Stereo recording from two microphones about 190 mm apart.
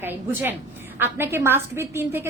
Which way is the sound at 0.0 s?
10° right (ahead or behind).